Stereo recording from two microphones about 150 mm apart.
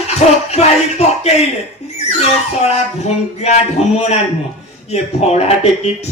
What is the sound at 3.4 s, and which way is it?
Speech, 45° left (ahead or behind).